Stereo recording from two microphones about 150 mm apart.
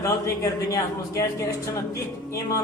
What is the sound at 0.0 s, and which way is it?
A man's voice, 20° left (ahead or behind).